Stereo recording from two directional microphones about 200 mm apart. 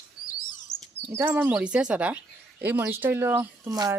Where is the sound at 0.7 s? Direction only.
35° left (ahead or behind).